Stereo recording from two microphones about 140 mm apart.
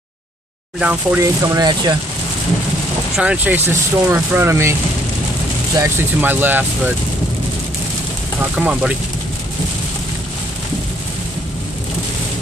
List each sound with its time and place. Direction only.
0.7 s speech: 10° right (ahead or behind)
1.2 s speech: 25° right (ahead or behind)
3.2 s speech: 10° right (ahead or behind)
5.8 s speech: 15° right (ahead or behind)
8.4 s speech: 10° right (ahead or behind)